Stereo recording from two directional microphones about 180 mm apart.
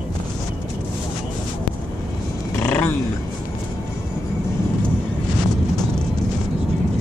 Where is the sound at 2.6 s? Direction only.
10° left (ahead or behind).